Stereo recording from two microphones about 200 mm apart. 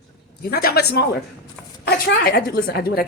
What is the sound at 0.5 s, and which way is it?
A woman's voice, 50° left (ahead or behind).